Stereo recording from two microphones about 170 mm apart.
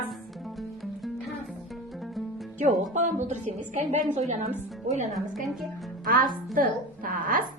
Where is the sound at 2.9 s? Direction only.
45° right (ahead or behind).